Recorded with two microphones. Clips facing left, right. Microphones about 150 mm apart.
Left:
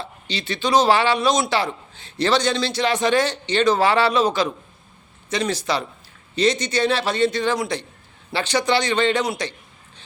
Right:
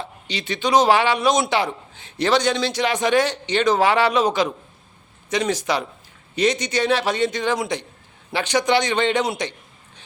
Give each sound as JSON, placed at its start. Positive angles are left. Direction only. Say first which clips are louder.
{"t": 0.0, "sound": "a man's voice", "louder": "even", "side_deg": -15}